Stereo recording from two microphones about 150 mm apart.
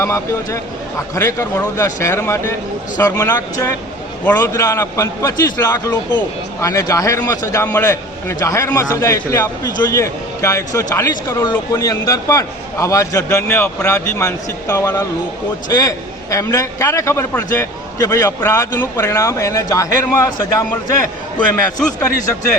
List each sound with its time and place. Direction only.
0.0 s a man's voice: 20° left (ahead or behind)
21.3 s speech: 10° left (ahead or behind)